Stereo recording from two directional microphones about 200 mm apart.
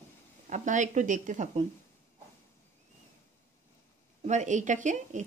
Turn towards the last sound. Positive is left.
turn(degrees=-40)  # may be behind; listen again after turning